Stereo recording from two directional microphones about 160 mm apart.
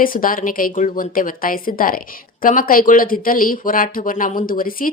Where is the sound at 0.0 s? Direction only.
60° left (ahead or behind).